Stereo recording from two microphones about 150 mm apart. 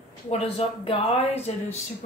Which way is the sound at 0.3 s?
40° left (ahead or behind).